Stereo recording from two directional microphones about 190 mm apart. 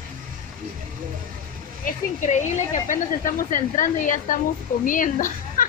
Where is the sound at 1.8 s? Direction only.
40° left (ahead or behind).